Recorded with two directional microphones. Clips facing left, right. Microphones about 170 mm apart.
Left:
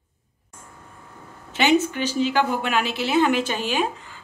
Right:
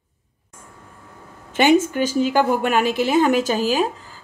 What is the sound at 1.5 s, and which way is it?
A woman's voice, 50° right (ahead or behind).